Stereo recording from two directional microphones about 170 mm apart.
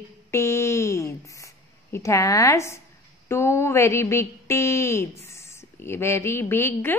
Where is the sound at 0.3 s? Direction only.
15° left (ahead or behind).